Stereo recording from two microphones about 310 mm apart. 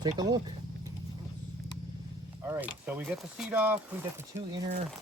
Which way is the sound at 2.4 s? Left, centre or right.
Centre.